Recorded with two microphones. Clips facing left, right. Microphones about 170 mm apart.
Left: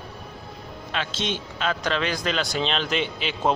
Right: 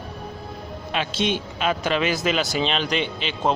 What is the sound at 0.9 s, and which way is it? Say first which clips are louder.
A man's voice: right 4 dB; 10° right (ahead or behind).